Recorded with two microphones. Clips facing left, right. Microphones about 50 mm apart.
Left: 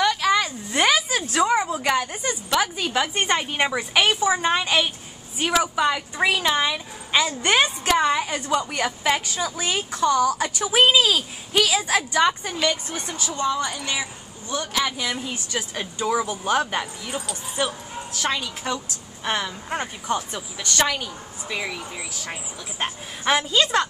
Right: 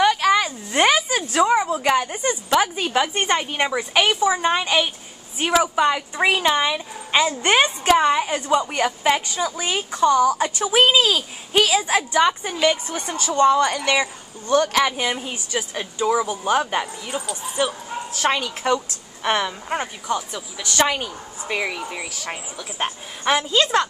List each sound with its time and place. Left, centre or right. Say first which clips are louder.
0.0 s a sound: right 3 dB; centre
0.9 s a sound: right 2 dB; centre
1.8 s a woman's voice: right 3 dB; centre
3.2 s a woman's voice: right 1 dB; centre
7.1 s a woman's voice: right 2 dB; centre
13.0 s a woman's voice: right 10 dB; right
15.0 s a woman's voice: right 3 dB; right
15.7 s a woman's voice: right 3 dB; centre
18.1 s a woman's voice: right 4 dB; right
20.1 s a woman's voice: even; centre
20.6 s a woman's voice: right 3 dB; centre
21.0 s a woman's voice: right 3 dB; right
22.8 s a woman's voice: right 2 dB; centre